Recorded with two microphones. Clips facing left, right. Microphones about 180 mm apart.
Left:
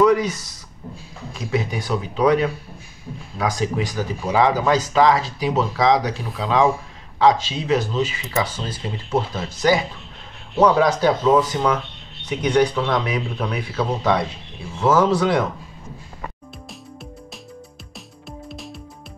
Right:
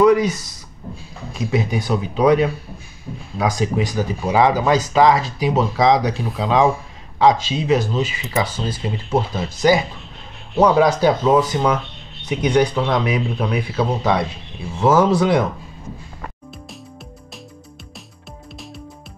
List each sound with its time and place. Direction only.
0.0 s speech: 15° right (ahead or behind)
1.5 s speech: 15° right (ahead or behind)